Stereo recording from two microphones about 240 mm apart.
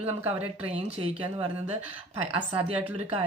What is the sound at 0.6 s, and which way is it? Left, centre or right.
A woman's voice, right.